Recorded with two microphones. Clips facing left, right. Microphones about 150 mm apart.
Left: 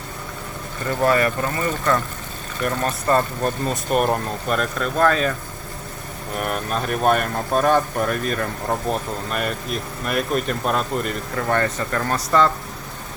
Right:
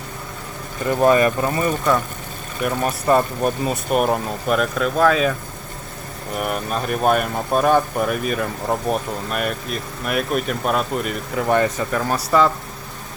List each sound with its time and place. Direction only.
0.9 s speech: 20° right (ahead or behind)
6.3 s speech: 5° right (ahead or behind)
11.4 s speech: 15° right (ahead or behind)